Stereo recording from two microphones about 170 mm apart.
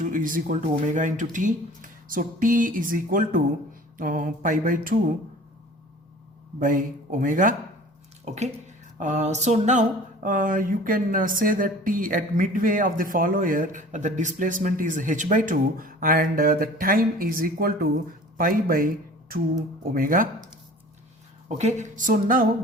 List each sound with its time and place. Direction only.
0.0 s speech: 55° right (ahead or behind)
6.6 s speech: 50° right (ahead or behind)
8.3 s speech: 40° right (ahead or behind)
21.6 s speech: 45° right (ahead or behind)